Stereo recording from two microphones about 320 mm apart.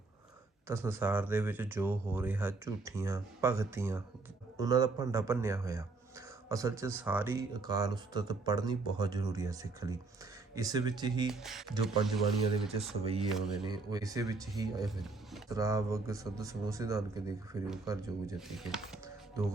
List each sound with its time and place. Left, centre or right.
0.7 s speech: centre
11.3 s speech: centre
12.6 s speech: centre
14.8 s speech: centre